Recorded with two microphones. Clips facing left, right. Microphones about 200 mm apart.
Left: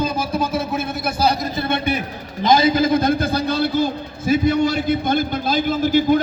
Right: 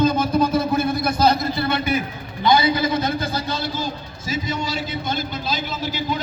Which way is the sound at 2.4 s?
45° left (ahead or behind).